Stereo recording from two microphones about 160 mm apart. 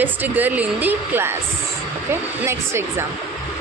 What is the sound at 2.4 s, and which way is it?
Speech, 15° right (ahead or behind).